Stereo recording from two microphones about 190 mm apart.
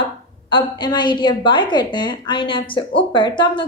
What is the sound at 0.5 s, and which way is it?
A woman's voice, 25° left (ahead or behind).